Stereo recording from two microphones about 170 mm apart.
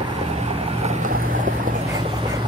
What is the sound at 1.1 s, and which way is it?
Boat, 55° right (ahead or behind).